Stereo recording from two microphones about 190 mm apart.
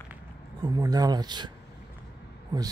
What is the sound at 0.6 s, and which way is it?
Speech, 20° right (ahead or behind).